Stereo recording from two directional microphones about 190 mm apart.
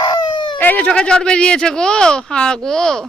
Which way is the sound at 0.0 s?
20° left (ahead or behind).